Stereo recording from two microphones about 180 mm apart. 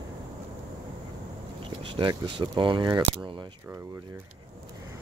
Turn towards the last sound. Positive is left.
turn(degrees=-25)  # may be behind; listen again after turning